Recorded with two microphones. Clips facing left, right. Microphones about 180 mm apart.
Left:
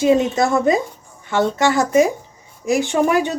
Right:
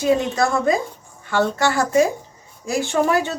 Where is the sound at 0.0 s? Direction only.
20° left (ahead or behind).